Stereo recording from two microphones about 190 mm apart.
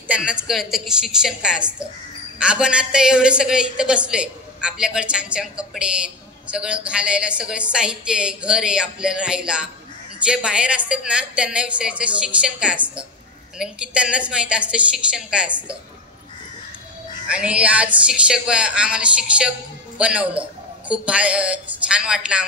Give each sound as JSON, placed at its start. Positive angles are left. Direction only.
{"t": 0.1, "sound": "a woman's voice", "side_deg": -5}
{"t": 17.3, "sound": "a woman's voice", "side_deg": -5}